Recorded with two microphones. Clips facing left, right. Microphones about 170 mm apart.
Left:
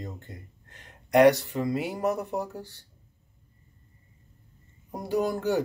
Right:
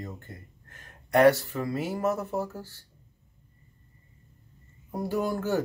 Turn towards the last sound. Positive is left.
turn(degrees=20)  # may be behind; listen again after turning